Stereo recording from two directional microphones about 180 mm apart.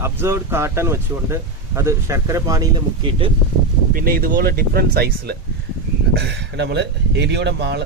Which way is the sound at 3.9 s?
55° right (ahead or behind).